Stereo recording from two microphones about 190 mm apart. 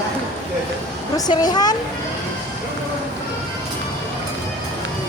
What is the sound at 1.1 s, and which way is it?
Speech, 20° left (ahead or behind).